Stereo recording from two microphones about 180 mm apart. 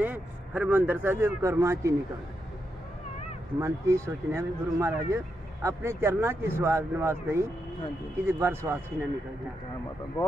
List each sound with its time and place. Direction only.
0.0 s speech: 10° right (ahead or behind)
3.5 s speech: 15° right (ahead or behind)
10.2 s speech: 15° left (ahead or behind)